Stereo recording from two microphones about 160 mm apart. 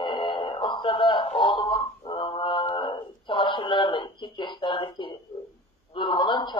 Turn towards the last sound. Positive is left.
turn(degrees=30)  # may be behind; listen again after turning